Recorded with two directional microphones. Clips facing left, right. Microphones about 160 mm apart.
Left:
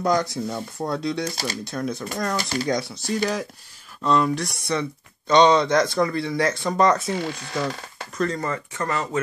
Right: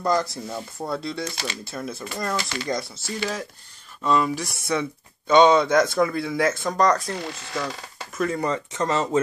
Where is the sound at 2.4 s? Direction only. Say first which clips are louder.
Left 4 dB; 40° left (ahead or behind).